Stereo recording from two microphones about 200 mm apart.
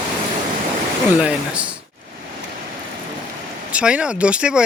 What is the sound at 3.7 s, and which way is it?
Speech, 5° right (ahead or behind).